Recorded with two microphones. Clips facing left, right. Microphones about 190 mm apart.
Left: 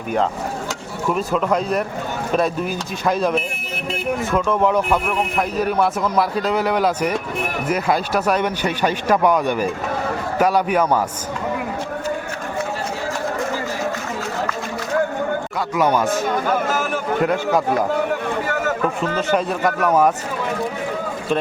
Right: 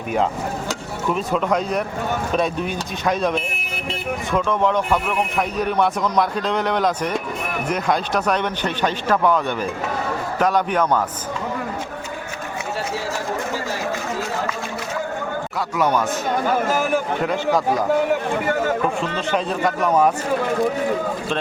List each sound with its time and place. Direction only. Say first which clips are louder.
1.0 s a man's voice: left 1 dB; centre (ahead or behind)
15.7 s speech: left 2 dB; 5° left (ahead or behind)
19.3 s speech: left 1 dB; 5° left (ahead or behind)